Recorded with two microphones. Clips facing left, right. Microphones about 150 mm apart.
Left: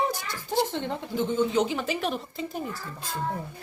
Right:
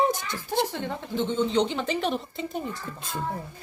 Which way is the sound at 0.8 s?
15° left (ahead or behind).